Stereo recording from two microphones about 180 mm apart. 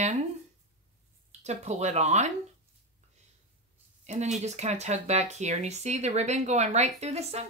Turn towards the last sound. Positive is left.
turn(degrees=-35)  # may be behind; listen again after turning